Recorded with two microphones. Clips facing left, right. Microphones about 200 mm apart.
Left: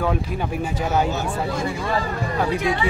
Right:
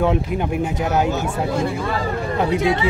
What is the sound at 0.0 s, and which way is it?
Speech, 20° right (ahead or behind).